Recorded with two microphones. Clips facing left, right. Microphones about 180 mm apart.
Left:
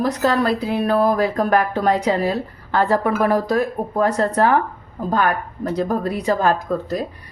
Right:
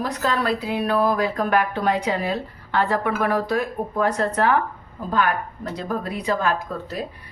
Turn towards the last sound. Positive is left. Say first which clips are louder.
# left 6 dB
turn(degrees=40)  # may be behind; listen again after turning